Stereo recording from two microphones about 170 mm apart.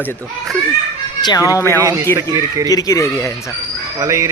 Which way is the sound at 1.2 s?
20° left (ahead or behind).